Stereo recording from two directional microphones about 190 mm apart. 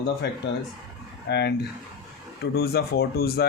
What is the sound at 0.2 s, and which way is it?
Speech, 60° left (ahead or behind).